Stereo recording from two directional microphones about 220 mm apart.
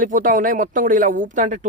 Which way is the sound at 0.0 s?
35° right (ahead or behind).